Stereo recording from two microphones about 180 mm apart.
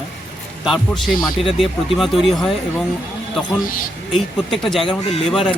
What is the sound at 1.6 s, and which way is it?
Speech, centre (ahead or behind).